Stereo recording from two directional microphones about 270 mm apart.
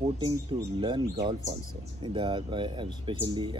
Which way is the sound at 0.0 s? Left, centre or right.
Centre.